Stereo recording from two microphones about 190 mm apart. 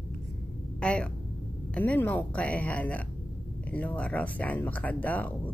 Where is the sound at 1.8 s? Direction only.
10° left (ahead or behind).